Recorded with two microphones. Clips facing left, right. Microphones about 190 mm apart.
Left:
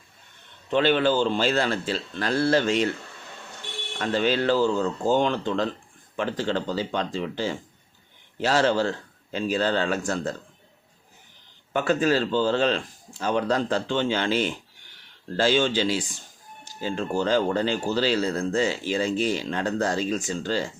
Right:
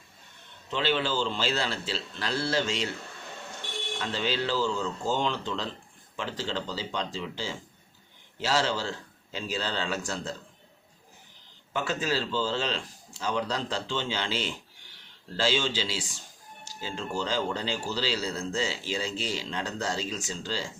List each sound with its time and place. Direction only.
0.7 s speech: 55° left (ahead or behind)
3.9 s speech: 55° left (ahead or behind)
11.7 s speech: 55° left (ahead or behind)